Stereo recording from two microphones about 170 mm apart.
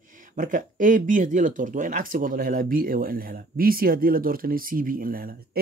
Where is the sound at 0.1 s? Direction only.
50° right (ahead or behind).